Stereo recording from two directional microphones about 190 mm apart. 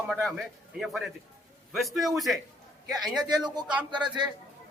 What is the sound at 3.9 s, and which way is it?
Speech, 25° right (ahead or behind).